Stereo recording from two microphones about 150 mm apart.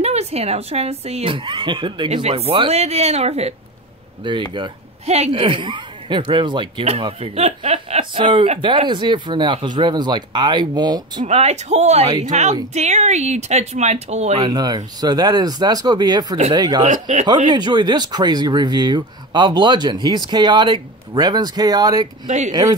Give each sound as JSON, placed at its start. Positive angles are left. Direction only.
{"t": 0.0, "sound": "speech", "side_deg": -45}
{"t": 4.2, "sound": "speech", "side_deg": -30}
{"t": 5.0, "sound": "speech", "side_deg": -45}
{"t": 7.3, "sound": "speech", "side_deg": -45}
{"t": 11.2, "sound": "speech", "side_deg": -45}
{"t": 14.4, "sound": "speech", "side_deg": -25}
{"t": 16.8, "sound": "speech", "side_deg": -50}
{"t": 17.5, "sound": "speech", "side_deg": -30}